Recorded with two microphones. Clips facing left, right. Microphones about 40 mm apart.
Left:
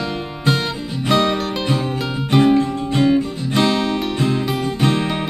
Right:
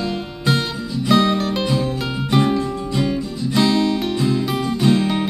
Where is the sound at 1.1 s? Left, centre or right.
Centre.